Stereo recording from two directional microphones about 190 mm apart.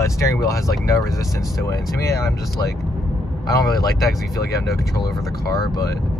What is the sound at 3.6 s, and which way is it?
Speech, 20° left (ahead or behind).